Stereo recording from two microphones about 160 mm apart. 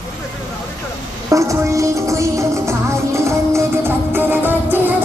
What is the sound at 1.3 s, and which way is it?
Music, 20° right (ahead or behind).